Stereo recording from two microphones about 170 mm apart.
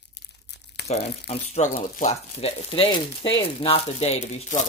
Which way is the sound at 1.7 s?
55° left (ahead or behind).